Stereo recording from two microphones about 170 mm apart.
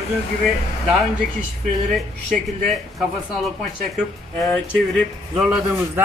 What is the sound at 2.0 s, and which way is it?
Speech, centre (ahead or behind).